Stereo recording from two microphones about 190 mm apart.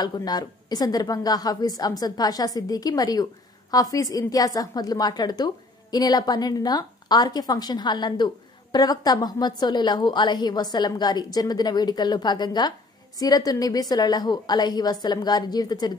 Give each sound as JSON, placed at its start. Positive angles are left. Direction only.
{"t": 0.0, "sound": "a woman's voice", "side_deg": 20}